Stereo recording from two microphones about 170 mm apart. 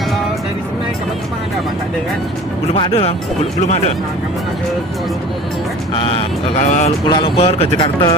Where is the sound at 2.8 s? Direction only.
35° left (ahead or behind).